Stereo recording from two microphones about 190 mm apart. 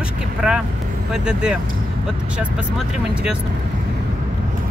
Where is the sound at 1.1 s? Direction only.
5° right (ahead or behind).